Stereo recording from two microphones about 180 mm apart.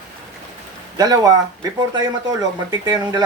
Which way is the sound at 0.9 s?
20° right (ahead or behind).